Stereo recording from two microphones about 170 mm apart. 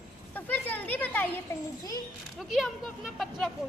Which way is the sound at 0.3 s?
10° left (ahead or behind).